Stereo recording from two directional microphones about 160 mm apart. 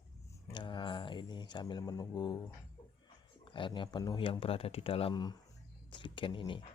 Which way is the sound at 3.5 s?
30° left (ahead or behind).